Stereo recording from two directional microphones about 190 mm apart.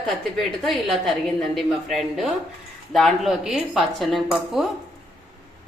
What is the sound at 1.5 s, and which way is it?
Speech, centre (ahead or behind).